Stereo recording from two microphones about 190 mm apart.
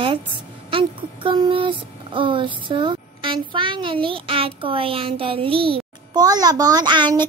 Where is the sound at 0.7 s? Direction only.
25° right (ahead or behind).